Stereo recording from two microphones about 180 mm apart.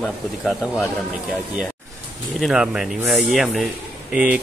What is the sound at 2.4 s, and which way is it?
Speech, 5° right (ahead or behind).